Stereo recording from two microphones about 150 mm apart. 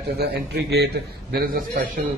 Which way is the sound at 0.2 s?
90° right.